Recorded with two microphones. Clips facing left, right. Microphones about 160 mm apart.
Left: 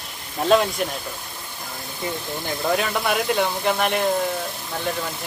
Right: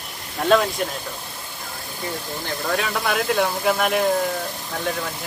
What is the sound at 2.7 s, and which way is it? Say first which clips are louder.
Speech: right 2 dB; centre (ahead or behind).